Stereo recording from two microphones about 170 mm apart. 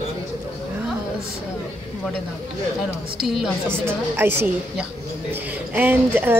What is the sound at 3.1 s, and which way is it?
A woman's voice, centre (ahead or behind).